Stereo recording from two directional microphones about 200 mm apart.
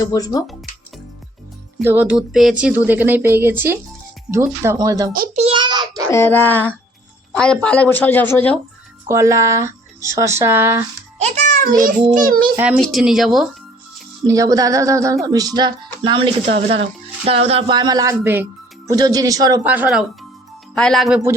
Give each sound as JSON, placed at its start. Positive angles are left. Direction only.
{"t": 0.0, "sound": "a woman's voice", "side_deg": 15}
{"t": 1.8, "sound": "speech", "side_deg": -10}
{"t": 5.1, "sound": "a child's voice", "side_deg": -45}
{"t": 5.4, "sound": "child singing", "side_deg": -25}
{"t": 6.1, "sound": "a woman's voice", "side_deg": 10}
{"t": 9.0, "sound": "speech", "side_deg": -15}
{"t": 11.2, "sound": "music", "side_deg": -35}
{"t": 12.1, "sound": "a child's voice", "side_deg": -45}
{"t": 12.8, "sound": "speech", "side_deg": 0}
{"t": 14.3, "sound": "speech", "side_deg": -15}